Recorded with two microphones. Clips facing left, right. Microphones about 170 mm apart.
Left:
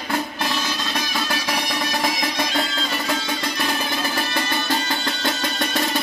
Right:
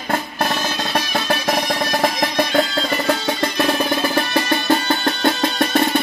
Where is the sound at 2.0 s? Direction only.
60° right (ahead or behind).